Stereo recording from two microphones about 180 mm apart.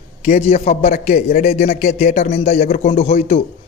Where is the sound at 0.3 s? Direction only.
35° left (ahead or behind).